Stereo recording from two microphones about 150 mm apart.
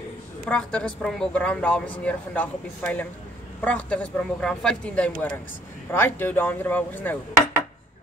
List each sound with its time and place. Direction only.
0.5 s a woman's voice: 5° left (ahead or behind)